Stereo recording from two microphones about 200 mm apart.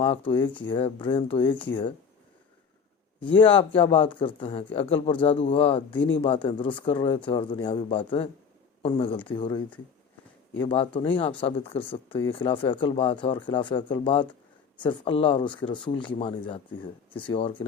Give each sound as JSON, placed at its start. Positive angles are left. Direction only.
{"t": 0.0, "sound": "speech", "side_deg": 25}
{"t": 3.2, "sound": "speech", "side_deg": 25}